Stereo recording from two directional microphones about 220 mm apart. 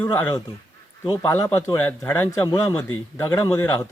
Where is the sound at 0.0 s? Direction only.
10° left (ahead or behind).